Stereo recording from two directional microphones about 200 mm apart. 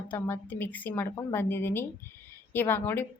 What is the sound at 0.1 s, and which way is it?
A woman's voice, 10° left (ahead or behind).